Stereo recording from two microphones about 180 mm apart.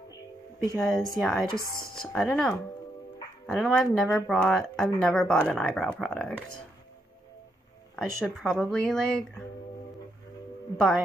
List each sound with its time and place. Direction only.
0.7 s speech: centre (ahead or behind)
1.7 s speech: 55° left (ahead or behind)
2.0 s speech: 5° left (ahead or behind)
7.9 s speech: 5° left (ahead or behind)